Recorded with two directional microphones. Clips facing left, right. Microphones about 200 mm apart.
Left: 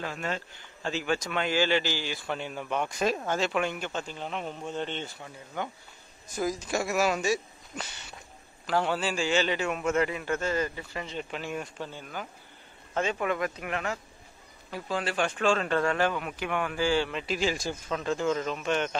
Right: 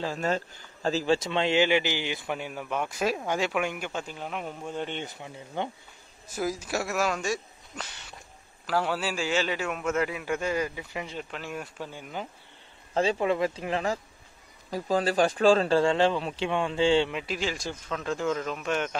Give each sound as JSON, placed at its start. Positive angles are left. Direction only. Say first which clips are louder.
{"t": 0.0, "sound": "a man's voice", "louder": "right 5 dB", "side_deg": -35}
{"t": 6.2, "sound": "a man's voice", "louder": "even", "side_deg": -5}
{"t": 12.9, "sound": "a man's voice", "louder": "right 4 dB", "side_deg": -30}
{"t": 17.1, "sound": "a man's voice", "louder": "left 1 dB", "side_deg": -10}
{"t": 17.4, "sound": "a man's voice", "louder": "left 3 dB", "side_deg": 5}